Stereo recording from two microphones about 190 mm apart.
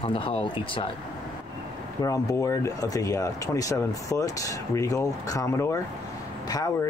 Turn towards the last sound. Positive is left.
turn(degrees=20)  # may be behind; listen again after turning